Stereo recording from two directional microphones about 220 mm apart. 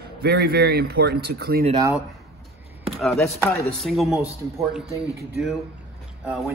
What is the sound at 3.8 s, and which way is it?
Chopping, centre (ahead or behind).